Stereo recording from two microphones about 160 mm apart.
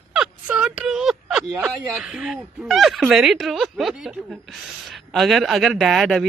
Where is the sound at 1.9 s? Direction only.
5° right (ahead or behind).